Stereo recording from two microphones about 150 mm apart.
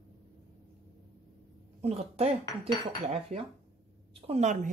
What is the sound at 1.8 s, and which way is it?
Speech, 45° right (ahead or behind).